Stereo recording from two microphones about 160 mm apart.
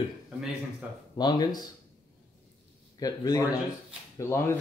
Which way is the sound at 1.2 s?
25° left (ahead or behind).